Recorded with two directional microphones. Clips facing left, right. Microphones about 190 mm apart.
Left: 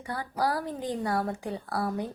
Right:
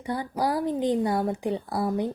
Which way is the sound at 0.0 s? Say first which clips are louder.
Right 3 dB; 20° right (ahead or behind).